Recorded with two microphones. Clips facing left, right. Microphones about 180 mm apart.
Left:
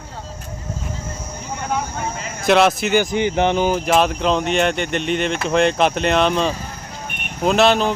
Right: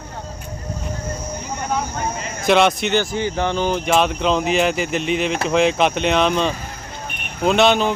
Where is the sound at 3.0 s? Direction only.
20° left (ahead or behind).